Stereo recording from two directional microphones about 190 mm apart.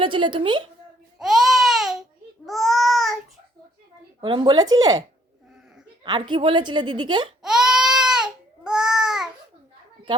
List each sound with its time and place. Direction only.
0.0 s a woman's voice: 25° right (ahead or behind)
1.2 s baby cry: centre (ahead or behind)
4.2 s a woman's voice: 25° right (ahead or behind)
7.4 s baby cry: 5° right (ahead or behind)